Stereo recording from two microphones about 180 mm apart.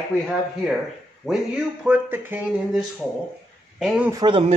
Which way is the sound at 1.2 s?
5° right (ahead or behind).